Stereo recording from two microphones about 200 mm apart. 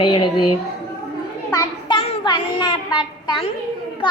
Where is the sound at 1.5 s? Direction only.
20° left (ahead or behind).